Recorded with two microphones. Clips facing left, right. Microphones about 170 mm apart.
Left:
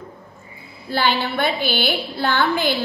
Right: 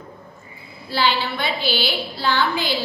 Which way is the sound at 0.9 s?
50° left (ahead or behind).